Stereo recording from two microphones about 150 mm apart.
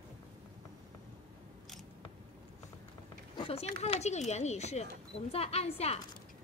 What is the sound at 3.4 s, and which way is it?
Speech, 45° left (ahead or behind).